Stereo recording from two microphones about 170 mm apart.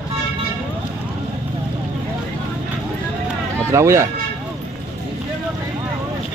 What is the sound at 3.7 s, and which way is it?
Speech, 15° right (ahead or behind).